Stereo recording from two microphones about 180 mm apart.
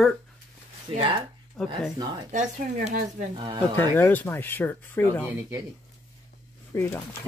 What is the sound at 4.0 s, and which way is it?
Speech, 10° left (ahead or behind).